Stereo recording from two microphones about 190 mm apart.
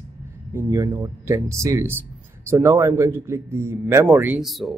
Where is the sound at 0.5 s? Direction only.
15° right (ahead or behind).